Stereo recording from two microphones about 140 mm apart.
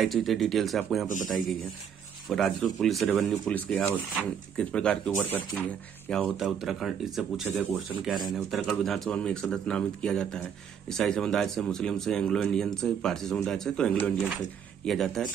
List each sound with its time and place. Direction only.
0.0 s speech: centre (ahead or behind)
1.0 s a man's voice: 70° left (ahead or behind)
2.2 s speech: centre (ahead or behind)
3.5 s speech: 10° left (ahead or behind)
6.3 s speech: centre (ahead or behind)